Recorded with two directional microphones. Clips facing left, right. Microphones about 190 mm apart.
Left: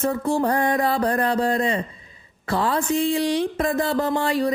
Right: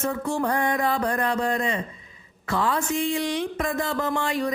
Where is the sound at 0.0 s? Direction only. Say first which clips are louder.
Left 4 dB; 35° left (ahead or behind).